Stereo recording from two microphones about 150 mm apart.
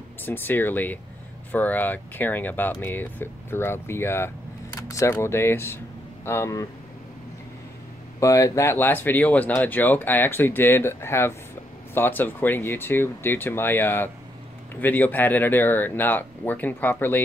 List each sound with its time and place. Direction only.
0.2 s speech: 15° left (ahead or behind)
8.2 s speech: 20° left (ahead or behind)